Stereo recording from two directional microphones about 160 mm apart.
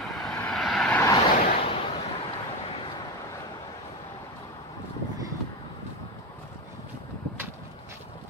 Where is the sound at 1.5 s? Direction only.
40° left (ahead or behind).